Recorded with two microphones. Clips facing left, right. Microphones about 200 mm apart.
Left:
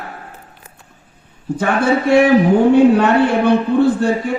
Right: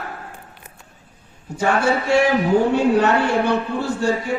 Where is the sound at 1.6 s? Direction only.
55° left (ahead or behind).